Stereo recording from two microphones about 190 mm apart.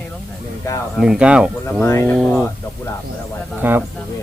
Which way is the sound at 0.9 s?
5° right (ahead or behind).